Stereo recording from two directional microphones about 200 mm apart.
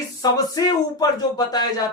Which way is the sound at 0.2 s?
20° left (ahead or behind).